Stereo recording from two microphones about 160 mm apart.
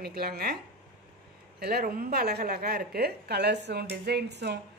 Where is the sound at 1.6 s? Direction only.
80° right.